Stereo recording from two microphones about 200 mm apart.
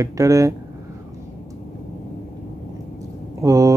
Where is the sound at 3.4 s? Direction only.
15° right (ahead or behind).